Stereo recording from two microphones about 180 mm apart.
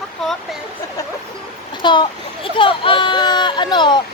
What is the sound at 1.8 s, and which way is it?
Speech, 25° left (ahead or behind).